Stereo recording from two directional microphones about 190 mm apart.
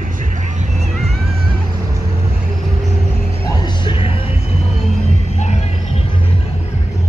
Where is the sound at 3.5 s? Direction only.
20° left (ahead or behind).